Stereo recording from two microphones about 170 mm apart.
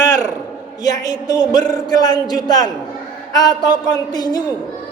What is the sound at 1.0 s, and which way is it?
A man's voice, 20° left (ahead or behind).